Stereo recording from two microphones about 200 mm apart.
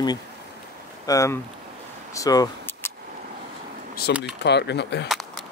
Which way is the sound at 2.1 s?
15° left (ahead or behind).